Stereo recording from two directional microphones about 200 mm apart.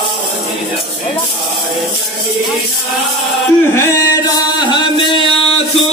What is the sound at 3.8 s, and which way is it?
Chant, 20° left (ahead or behind).